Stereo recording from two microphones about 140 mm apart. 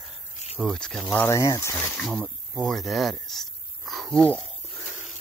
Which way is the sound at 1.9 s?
Centre (ahead or behind).